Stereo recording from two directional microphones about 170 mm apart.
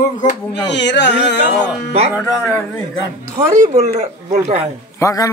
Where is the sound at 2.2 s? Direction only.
15° left (ahead or behind).